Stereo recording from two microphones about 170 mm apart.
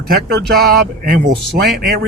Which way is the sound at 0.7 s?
60° right (ahead or behind).